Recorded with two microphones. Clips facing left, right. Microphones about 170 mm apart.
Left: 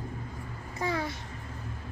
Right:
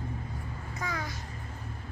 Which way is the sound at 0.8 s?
30° left (ahead or behind).